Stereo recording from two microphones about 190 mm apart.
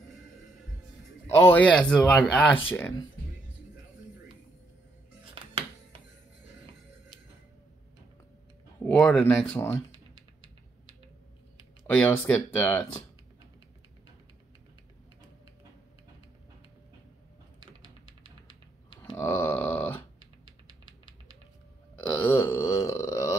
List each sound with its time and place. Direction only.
1.2 s speech: 10° left (ahead or behind)
5.3 s music: 30° right (ahead or behind)
8.8 s speech: 5° left (ahead or behind)
11.9 s speech: 10° left (ahead or behind)
19.1 s a sound: 10° left (ahead or behind)
22.1 s a sound: 10° left (ahead or behind)